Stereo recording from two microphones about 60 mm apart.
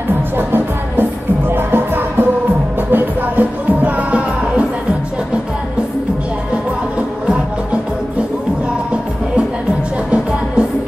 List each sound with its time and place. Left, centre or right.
0.4 s music: right